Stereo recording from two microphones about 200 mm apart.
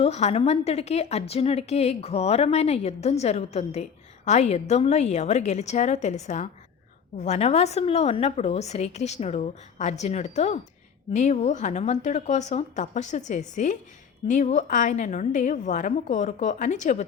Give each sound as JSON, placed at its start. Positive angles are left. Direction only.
{"t": 0.0, "sound": "a woman's voice", "side_deg": 30}